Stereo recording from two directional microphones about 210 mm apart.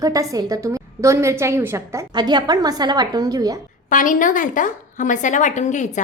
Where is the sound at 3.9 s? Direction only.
40° left (ahead or behind).